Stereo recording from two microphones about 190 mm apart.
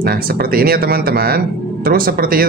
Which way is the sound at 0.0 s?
55° right (ahead or behind).